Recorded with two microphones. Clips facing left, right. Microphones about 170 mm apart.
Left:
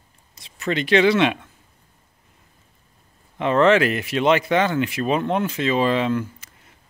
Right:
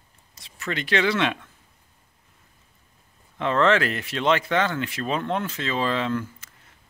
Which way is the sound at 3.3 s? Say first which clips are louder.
Left 4 dB; 15° left (ahead or behind).